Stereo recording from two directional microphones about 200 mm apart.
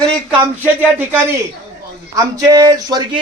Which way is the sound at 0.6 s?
10° right (ahead or behind).